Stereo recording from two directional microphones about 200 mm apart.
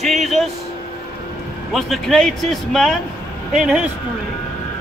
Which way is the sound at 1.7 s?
Centre (ahead or behind).